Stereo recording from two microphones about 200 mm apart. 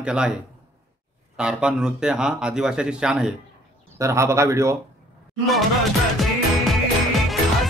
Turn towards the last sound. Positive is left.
turn(degrees=0)  # may be behind; listen again after turning